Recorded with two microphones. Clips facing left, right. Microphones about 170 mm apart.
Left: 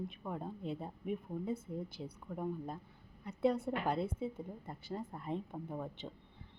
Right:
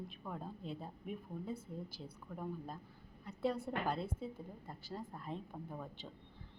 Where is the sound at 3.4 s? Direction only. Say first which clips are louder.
Left 4 dB; 20° left (ahead or behind).